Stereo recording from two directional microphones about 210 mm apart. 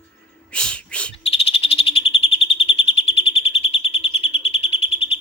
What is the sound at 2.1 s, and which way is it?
Bird, 25° left (ahead or behind).